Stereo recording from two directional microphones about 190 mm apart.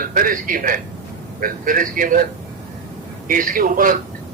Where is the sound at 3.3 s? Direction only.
45° right (ahead or behind).